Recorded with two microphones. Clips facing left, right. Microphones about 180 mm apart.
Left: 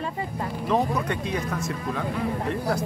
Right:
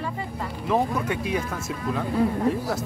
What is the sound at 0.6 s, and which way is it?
Speech, 10° right (ahead or behind).